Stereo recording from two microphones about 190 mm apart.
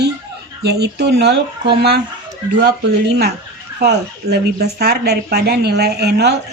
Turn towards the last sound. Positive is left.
turn(degrees=-60)  # may be behind; listen again after turning